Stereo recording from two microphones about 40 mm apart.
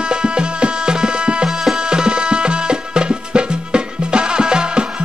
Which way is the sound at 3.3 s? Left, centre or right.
Right.